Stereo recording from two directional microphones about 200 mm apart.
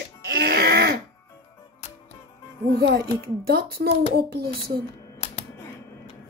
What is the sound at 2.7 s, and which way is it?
Speech, 50° right (ahead or behind).